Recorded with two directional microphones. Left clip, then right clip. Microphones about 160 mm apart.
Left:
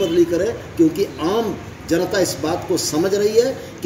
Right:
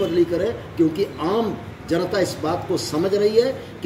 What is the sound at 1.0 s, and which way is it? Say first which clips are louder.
Speech: left 2 dB; 10° right (ahead or behind).